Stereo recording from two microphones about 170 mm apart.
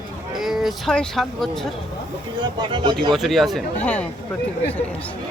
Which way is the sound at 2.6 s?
25° right (ahead or behind).